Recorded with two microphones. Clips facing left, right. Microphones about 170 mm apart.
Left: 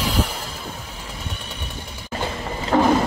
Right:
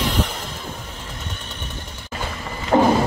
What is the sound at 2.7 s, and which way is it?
Thunder, 20° right (ahead or behind).